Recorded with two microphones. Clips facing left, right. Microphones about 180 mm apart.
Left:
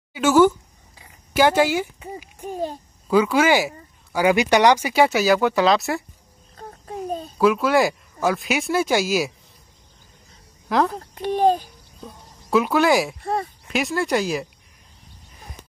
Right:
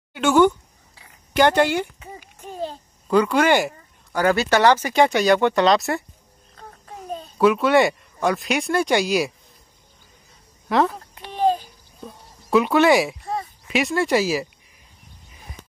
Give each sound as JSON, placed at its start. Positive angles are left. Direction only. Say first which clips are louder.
{"t": 0.1, "sound": "speech", "louder": "left 1 dB", "side_deg": 5}
{"t": 6.5, "sound": "a sound", "louder": "left 7 dB", "side_deg": 35}
{"t": 7.3, "sound": "speech", "louder": "right 2 dB", "side_deg": 0}
{"t": 10.7, "sound": "speech", "louder": "right 1 dB", "side_deg": 0}
{"t": 11.1, "sound": "a sound", "louder": "left 3 dB", "side_deg": 45}
{"t": 12.4, "sound": "speech", "louder": "right 2 dB", "side_deg": 0}
{"t": 13.2, "sound": "speech", "louder": "left 3 dB", "side_deg": 55}
{"t": 13.7, "sound": "speech", "louder": "right 3 dB", "side_deg": 0}